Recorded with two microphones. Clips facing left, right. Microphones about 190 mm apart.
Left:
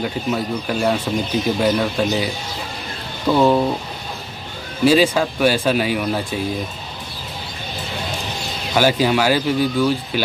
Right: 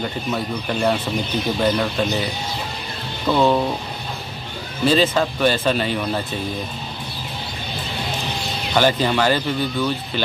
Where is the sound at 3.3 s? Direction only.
10° left (ahead or behind).